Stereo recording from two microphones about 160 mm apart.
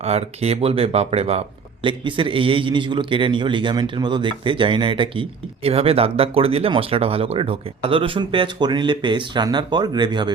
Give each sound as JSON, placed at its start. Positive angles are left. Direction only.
{"t": 0.0, "sound": "speech", "side_deg": -40}